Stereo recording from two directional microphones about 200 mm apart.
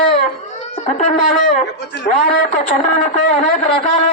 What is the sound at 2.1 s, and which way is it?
Speech, 35° left (ahead or behind).